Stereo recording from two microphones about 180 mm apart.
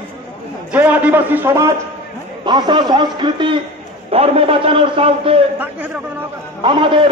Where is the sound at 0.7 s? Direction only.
10° right (ahead or behind).